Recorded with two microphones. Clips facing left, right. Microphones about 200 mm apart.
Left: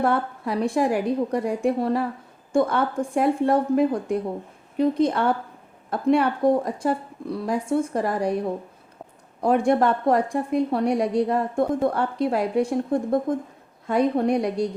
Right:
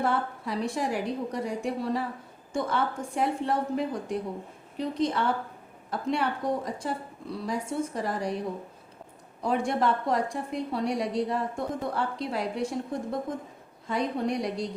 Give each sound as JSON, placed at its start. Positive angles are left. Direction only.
{"t": 0.0, "sound": "a woman's voice", "side_deg": 55}
{"t": 9.4, "sound": "a woman's voice", "side_deg": 55}